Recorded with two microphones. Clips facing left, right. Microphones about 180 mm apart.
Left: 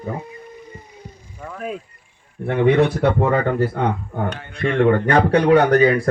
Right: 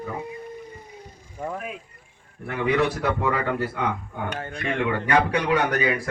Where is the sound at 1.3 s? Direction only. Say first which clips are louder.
Right 4 dB; 20° right (ahead or behind).